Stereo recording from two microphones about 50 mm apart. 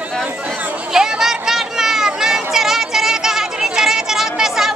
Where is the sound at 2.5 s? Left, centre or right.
Centre.